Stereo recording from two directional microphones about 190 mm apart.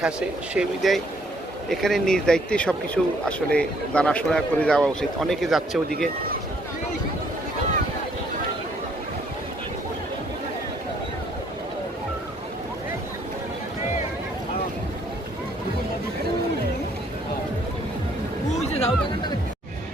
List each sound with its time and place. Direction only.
0.0 s speech: 5° right (ahead or behind)
18.5 s music: 30° left (ahead or behind)